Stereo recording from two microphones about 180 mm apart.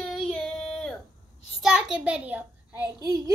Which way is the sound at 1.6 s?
5° right (ahead or behind).